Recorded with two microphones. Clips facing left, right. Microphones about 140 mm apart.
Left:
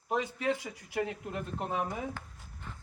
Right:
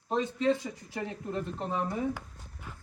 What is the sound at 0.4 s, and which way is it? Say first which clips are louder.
Speech: right 4 dB; 10° left (ahead or behind).